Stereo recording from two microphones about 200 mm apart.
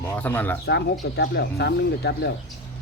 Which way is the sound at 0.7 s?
55° left (ahead or behind).